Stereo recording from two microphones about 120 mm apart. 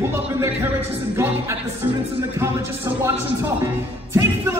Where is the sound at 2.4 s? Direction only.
20° right (ahead or behind).